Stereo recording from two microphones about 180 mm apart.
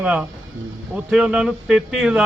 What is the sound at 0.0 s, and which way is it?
A man's voice, 5° right (ahead or behind).